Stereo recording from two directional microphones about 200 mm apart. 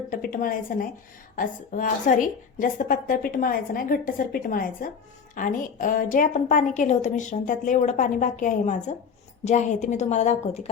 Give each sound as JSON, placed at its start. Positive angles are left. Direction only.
{"t": 0.1, "sound": "a woman's voice", "side_deg": 45}